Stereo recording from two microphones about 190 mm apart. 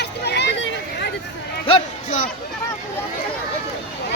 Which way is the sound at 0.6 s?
60° left (ahead or behind).